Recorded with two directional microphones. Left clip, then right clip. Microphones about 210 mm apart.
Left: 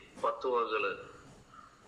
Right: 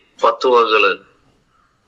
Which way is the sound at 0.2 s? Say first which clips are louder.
Right 19 dB; 50° right (ahead or behind).